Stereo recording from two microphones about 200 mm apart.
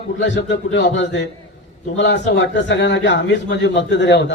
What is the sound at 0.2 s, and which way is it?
A man's voice, 65° left (ahead or behind).